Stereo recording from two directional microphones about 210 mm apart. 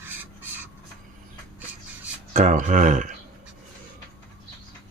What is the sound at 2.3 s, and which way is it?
Speech, 35° right (ahead or behind).